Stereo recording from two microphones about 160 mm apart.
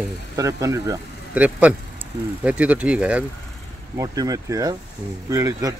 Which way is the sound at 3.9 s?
20° right (ahead or behind).